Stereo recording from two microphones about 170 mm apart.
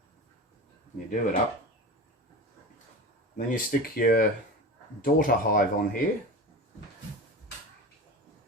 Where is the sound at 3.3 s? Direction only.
55° left (ahead or behind).